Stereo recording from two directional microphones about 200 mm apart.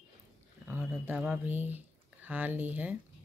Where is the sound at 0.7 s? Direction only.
10° right (ahead or behind).